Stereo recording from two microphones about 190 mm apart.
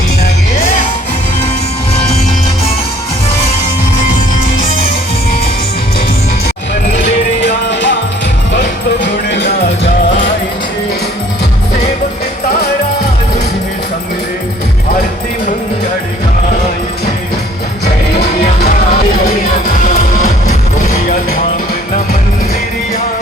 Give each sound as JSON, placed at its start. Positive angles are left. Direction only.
{"t": 7.4, "sound": "music", "side_deg": 65}
{"t": 9.3, "sound": "music", "side_deg": 70}
{"t": 20.2, "sound": "music", "side_deg": 40}